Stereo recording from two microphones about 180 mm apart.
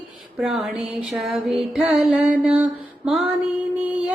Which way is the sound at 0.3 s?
5° right (ahead or behind).